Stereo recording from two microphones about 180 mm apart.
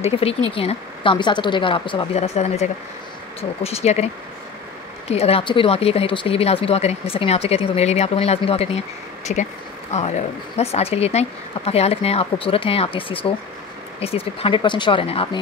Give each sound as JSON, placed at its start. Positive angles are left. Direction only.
{"t": 0.0, "sound": "speech", "side_deg": 35}
{"t": 9.3, "sound": "speech", "side_deg": 45}